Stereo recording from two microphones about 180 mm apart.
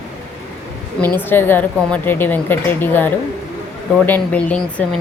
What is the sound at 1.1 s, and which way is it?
A woman's voice, 10° left (ahead or behind).